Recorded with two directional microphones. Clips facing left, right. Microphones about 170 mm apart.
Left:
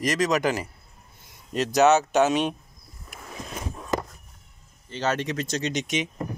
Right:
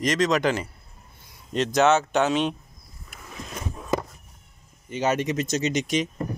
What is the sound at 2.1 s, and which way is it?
Speech, 15° left (ahead or behind).